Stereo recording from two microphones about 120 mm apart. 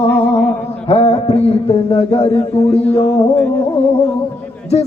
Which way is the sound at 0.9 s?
60° left (ahead or behind).